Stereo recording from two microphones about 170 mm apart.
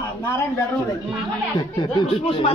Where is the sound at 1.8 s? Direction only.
35° left (ahead or behind).